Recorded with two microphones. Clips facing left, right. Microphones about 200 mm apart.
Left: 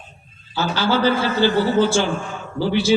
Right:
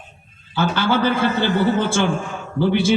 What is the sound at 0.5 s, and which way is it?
Speech, 55° right (ahead or behind).